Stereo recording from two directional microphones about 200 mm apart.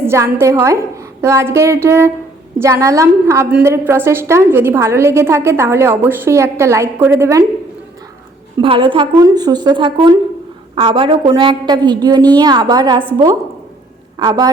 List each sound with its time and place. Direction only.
0.0 s a woman's voice: 10° right (ahead or behind)
8.6 s a woman's voice: 25° right (ahead or behind)
14.2 s a woman's voice: 20° right (ahead or behind)